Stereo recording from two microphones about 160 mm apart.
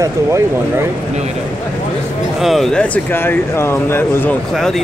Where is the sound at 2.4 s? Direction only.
Centre (ahead or behind).